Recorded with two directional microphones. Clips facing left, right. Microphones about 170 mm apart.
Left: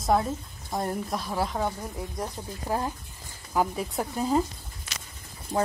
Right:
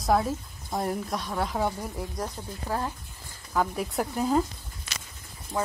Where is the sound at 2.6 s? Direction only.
15° left (ahead or behind).